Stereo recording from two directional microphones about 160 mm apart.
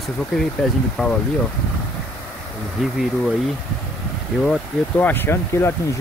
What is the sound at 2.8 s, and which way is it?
Speech, centre (ahead or behind).